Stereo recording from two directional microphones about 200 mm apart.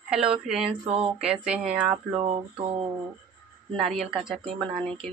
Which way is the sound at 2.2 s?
30° right (ahead or behind).